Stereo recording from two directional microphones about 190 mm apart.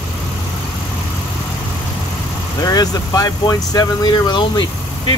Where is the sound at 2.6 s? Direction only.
20° left (ahead or behind).